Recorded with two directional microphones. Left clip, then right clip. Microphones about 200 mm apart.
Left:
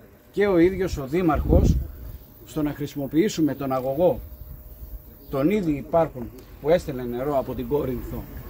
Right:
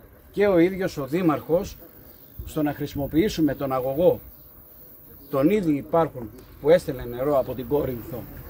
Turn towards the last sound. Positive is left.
turn(degrees=-10)  # may be behind; listen again after turning